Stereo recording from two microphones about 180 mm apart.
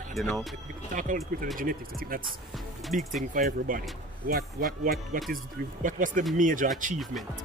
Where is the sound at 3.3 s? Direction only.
50° right (ahead or behind).